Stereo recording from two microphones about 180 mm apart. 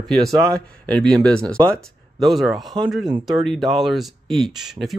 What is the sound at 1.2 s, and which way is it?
Speech, 5° left (ahead or behind).